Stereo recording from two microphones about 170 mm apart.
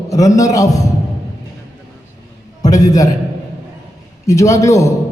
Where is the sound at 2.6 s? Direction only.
20° left (ahead or behind).